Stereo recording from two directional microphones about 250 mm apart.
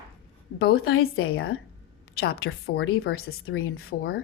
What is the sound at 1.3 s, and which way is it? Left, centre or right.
Speech, left.